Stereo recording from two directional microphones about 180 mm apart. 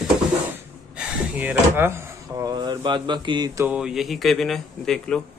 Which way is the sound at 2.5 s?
25° right (ahead or behind).